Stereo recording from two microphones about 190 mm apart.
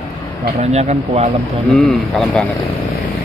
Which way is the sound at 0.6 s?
35° right (ahead or behind).